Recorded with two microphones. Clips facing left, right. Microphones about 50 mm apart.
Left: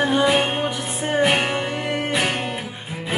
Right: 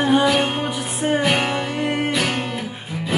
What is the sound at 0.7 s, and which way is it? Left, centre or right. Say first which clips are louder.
Music: right 1 dB; right.